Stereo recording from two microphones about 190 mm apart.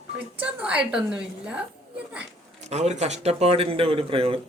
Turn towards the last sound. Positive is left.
turn(degrees=-30)  # may be behind; listen again after turning